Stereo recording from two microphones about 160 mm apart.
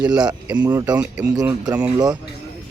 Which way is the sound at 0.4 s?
10° right (ahead or behind).